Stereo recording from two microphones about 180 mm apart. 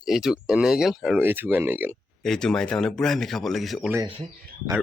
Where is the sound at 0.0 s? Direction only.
5° right (ahead or behind).